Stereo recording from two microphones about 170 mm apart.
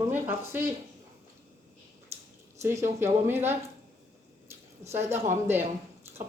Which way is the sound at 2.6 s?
15° right (ahead or behind).